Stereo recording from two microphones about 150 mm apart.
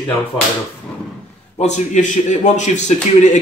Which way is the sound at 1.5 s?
50° left (ahead or behind).